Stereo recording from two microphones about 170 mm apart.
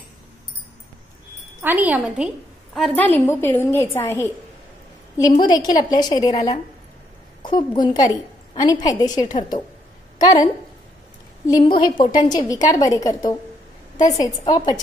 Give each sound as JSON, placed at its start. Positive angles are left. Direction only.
{"t": 1.6, "sound": "a woman's voice", "side_deg": -10}
{"t": 5.3, "sound": "a woman's voice", "side_deg": 25}
{"t": 7.4, "sound": "a woman's voice", "side_deg": 25}
{"t": 11.4, "sound": "a woman's voice", "side_deg": 25}